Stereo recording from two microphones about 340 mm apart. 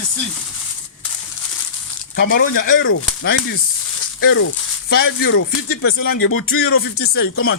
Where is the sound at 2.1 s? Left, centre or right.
Left.